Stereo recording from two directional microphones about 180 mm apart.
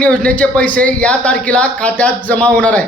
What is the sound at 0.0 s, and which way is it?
A man's voice, 5° left (ahead or behind).